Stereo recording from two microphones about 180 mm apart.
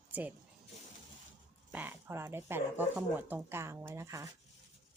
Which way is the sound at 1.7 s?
10° right (ahead or behind).